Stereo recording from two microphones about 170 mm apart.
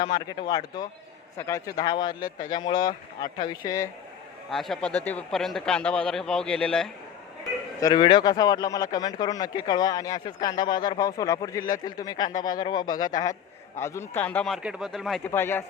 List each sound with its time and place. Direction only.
0.0 s speech: 25° left (ahead or behind)
4.5 s speech: centre (ahead or behind)
7.8 s speech: 25° left (ahead or behind); by 15.2 s centre (ahead or behind)
15.2 s speech: 15° left (ahead or behind)